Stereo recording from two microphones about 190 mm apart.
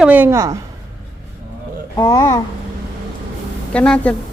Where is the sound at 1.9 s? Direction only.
20° left (ahead or behind).